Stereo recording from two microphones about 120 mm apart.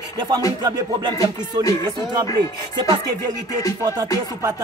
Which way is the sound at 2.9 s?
35° right (ahead or behind).